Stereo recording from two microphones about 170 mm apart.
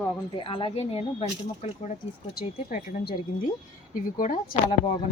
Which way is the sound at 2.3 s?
60° left (ahead or behind).